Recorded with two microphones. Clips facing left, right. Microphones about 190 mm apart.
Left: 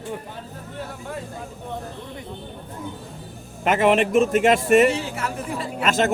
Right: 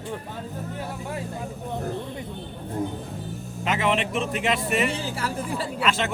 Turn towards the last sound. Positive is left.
turn(degrees=45)  # may be behind; listen again after turning